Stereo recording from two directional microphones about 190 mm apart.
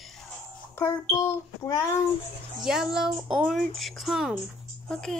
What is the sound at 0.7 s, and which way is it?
Speech, 15° left (ahead or behind).